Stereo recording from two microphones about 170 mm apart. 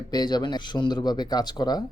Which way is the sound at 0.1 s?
25° left (ahead or behind).